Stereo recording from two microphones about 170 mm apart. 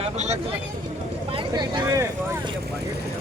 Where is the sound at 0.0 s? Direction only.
40° right (ahead or behind).